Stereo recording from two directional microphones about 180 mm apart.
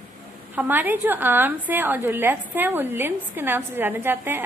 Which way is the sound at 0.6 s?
10° right (ahead or behind).